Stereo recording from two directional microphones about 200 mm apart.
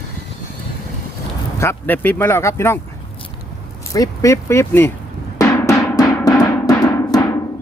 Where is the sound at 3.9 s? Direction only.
15° left (ahead or behind).